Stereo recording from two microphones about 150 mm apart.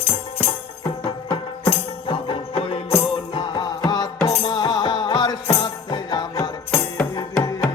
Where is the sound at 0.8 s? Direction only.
30° left (ahead or behind).